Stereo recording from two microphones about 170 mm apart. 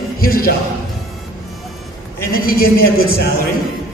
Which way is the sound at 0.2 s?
60° left (ahead or behind).